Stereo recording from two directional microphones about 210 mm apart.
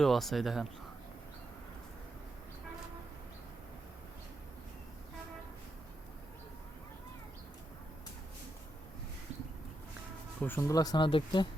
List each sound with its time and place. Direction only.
0.0 s speech: centre (ahead or behind)
10.4 s speech: 10° left (ahead or behind)